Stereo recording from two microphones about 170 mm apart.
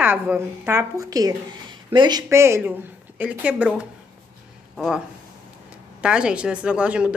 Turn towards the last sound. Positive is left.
turn(degrees=-5)  # may be behind; listen again after turning